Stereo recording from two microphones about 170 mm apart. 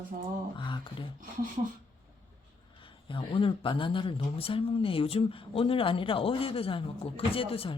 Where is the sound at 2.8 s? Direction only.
30° left (ahead or behind).